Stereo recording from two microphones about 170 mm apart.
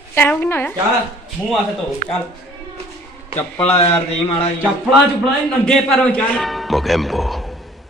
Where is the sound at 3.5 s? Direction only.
10° left (ahead or behind).